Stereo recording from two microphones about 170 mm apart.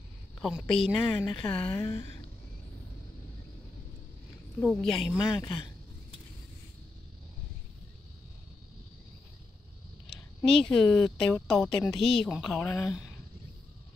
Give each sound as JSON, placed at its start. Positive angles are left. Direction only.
{"t": 0.4, "sound": "a woman's voice", "side_deg": 0}
{"t": 4.6, "sound": "speech", "side_deg": 0}
{"t": 5.4, "sound": "speech", "side_deg": 25}
{"t": 10.0, "sound": "a woman's voice", "side_deg": 0}
{"t": 12.0, "sound": "a woman's voice", "side_deg": 30}
{"t": 12.3, "sound": "speech", "side_deg": 0}